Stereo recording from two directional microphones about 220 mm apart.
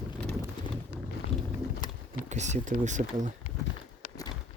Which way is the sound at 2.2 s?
30° right (ahead or behind).